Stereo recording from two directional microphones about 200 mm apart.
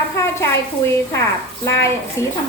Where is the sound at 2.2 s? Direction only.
15° left (ahead or behind).